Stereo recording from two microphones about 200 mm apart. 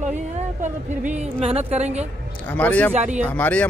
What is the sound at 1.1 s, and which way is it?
Speech, 30° right (ahead or behind).